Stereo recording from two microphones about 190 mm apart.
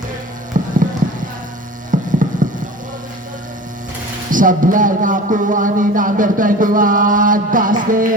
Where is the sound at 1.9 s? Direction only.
45° right (ahead or behind).